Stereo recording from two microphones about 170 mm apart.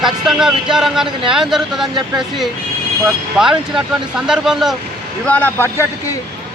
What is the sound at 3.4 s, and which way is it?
Speech, 5° right (ahead or behind).